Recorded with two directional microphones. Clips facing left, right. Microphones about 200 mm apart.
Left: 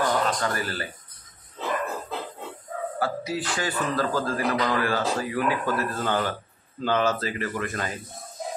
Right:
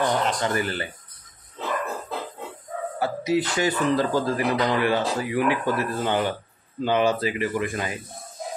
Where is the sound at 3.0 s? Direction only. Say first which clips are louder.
Right 6 dB; 20° right (ahead or behind).